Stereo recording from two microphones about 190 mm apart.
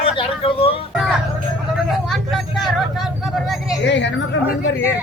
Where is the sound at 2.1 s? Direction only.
Centre (ahead or behind).